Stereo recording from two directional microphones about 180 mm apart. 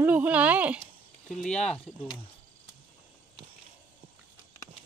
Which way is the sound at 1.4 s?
5° left (ahead or behind).